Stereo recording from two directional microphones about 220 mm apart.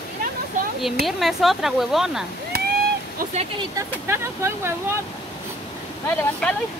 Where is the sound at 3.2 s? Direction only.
30° right (ahead or behind).